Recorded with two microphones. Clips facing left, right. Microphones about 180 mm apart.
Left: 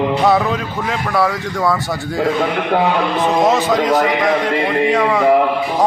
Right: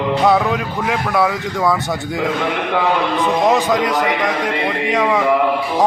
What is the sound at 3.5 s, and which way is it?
Speech, 15° right (ahead or behind).